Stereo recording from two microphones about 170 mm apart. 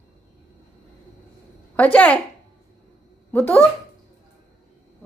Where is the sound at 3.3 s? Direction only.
10° left (ahead or behind).